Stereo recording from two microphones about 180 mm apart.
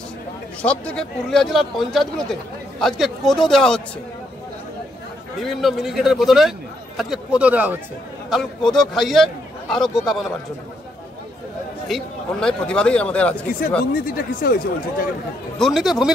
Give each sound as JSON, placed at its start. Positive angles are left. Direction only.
{"t": 0.6, "sound": "a man's voice", "side_deg": 5}
{"t": 5.4, "sound": "a man's voice", "side_deg": 0}
{"t": 8.3, "sound": "a man's voice", "side_deg": 5}
{"t": 11.9, "sound": "a man's voice", "side_deg": 5}
{"t": 14.0, "sound": "speech", "side_deg": 55}
{"t": 15.6, "sound": "a man's voice", "side_deg": 0}